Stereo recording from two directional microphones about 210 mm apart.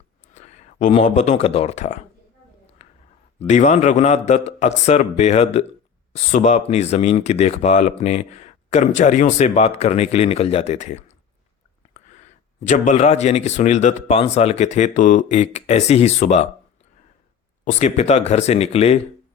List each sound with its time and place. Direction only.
0.3 s speech: 35° left (ahead or behind)
3.4 s speech: 35° left (ahead or behind)
12.2 s speech: 35° left (ahead or behind)
17.7 s speech: 35° left (ahead or behind)